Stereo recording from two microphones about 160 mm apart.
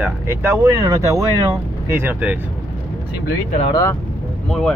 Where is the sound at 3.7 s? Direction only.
20° left (ahead or behind).